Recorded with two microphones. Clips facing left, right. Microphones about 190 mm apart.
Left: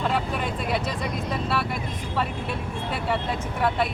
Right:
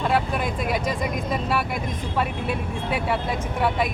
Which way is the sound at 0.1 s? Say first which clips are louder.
Right 3 dB; 10° right (ahead or behind).